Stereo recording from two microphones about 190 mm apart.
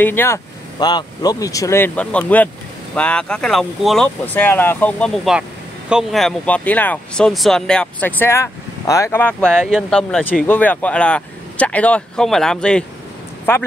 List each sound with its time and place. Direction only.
0.0 s speech: 10° left (ahead or behind)
0.7 s speech: 20° left (ahead or behind)